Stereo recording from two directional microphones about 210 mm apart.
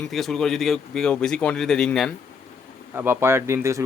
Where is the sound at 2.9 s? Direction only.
10° right (ahead or behind).